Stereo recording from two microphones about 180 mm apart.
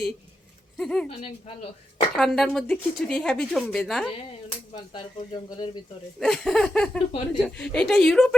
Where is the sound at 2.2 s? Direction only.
Centre (ahead or behind).